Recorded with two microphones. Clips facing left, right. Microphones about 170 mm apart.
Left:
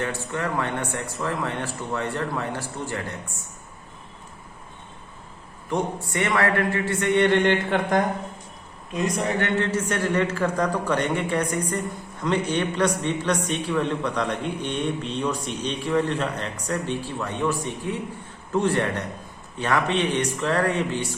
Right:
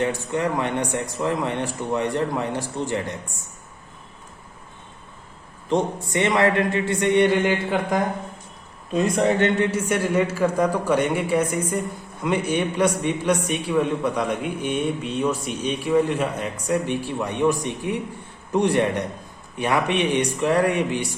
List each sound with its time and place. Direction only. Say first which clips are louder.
0.0 s speech: right 5 dB; 20° right (ahead or behind)
5.6 s speech: right 4 dB; 20° right (ahead or behind)
7.3 s speech: even; 5° right (ahead or behind)
8.9 s speech: right 5 dB; 30° right (ahead or behind)
9.6 s a man's voice: right 2 dB; 10° right (ahead or behind)